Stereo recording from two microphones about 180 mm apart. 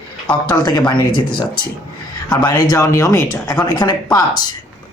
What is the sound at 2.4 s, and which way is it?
Speech, 20° left (ahead or behind).